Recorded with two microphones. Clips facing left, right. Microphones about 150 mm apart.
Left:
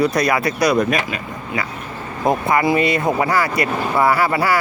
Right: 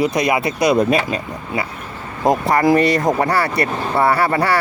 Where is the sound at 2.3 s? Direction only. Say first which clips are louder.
Right 3 dB; 40° right (ahead or behind).